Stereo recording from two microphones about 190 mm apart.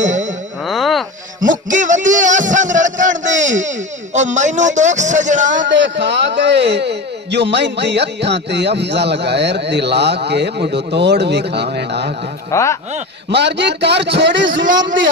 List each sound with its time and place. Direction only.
0.0 s a sound: 40° right (ahead or behind)
0.7 s a sound: centre (ahead or behind)
1.4 s a man's voice: 40° right (ahead or behind)
5.7 s a man's voice: 70° right (ahead or behind)
12.4 s speech: 15° left (ahead or behind)
13.3 s a man's voice: 65° right (ahead or behind); by 14.9 s 80° right